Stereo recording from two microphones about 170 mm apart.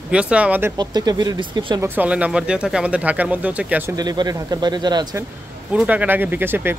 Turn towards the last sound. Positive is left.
turn(degrees=-15)  # may be behind; listen again after turning